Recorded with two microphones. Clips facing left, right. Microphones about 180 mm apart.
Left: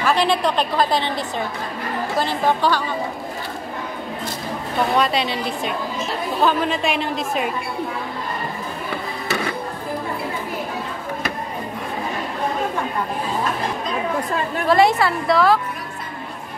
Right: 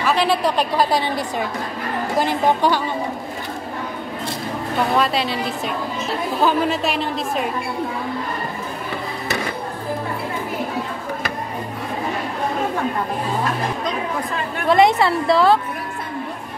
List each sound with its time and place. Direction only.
0.0 s a woman's voice: 5° right (ahead or behind)
4.9 s speech: centre (ahead or behind)
6.4 s speech: 5° right (ahead or behind)
14.7 s a woman's voice: 20° right (ahead or behind)